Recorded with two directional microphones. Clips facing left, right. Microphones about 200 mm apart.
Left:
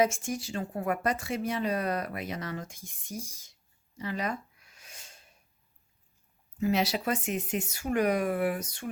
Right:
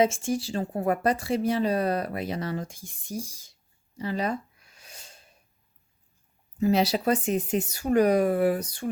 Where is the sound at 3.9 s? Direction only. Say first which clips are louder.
Right 5 dB; 30° right (ahead or behind).